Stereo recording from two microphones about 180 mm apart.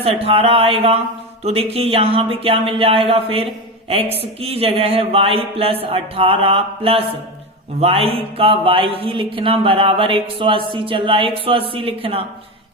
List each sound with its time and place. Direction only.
0.0 s speech: 30° right (ahead or behind)